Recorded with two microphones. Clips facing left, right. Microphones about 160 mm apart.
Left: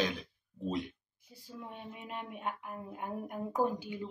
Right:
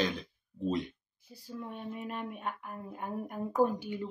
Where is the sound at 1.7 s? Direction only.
15° left (ahead or behind).